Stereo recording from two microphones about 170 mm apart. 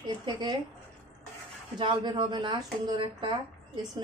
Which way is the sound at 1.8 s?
25° right (ahead or behind).